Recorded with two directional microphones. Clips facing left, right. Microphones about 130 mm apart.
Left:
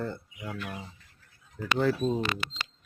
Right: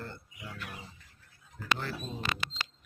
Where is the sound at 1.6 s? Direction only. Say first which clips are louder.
Left 2 dB; 90° left.